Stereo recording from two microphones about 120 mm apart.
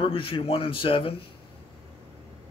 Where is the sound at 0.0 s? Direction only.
50° left (ahead or behind).